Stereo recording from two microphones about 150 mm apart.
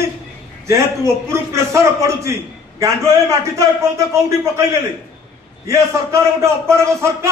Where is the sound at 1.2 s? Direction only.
20° right (ahead or behind).